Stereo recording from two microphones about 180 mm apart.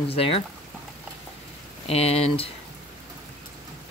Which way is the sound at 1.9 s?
35° left (ahead or behind).